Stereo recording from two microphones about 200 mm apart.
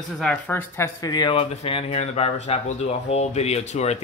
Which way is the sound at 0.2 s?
5° left (ahead or behind).